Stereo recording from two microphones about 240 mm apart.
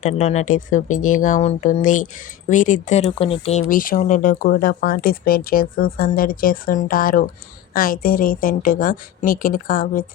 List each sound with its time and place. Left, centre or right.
0.0 s speech: left